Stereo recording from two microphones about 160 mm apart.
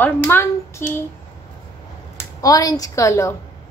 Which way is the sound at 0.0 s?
15° left (ahead or behind).